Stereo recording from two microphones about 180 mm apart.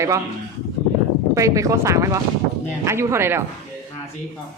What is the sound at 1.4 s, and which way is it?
A woman's voice, 15° right (ahead or behind).